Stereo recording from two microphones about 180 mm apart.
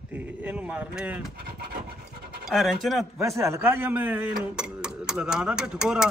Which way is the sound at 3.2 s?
15° right (ahead or behind).